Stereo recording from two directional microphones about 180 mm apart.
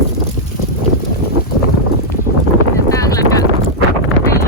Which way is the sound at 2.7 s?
20° left (ahead or behind).